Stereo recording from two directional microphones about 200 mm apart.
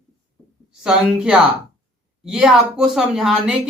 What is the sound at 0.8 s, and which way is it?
Speech, 5° right (ahead or behind).